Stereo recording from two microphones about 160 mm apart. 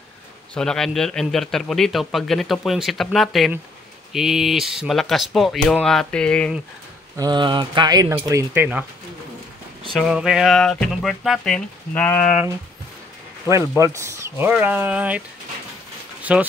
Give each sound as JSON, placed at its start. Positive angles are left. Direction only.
{"t": 0.6, "sound": "a man's voice", "side_deg": 5}
{"t": 7.2, "sound": "speech", "side_deg": -25}
{"t": 9.9, "sound": "a man's voice", "side_deg": -5}
{"t": 13.7, "sound": "speech", "side_deg": -20}
{"t": 16.2, "sound": "a sound", "side_deg": -10}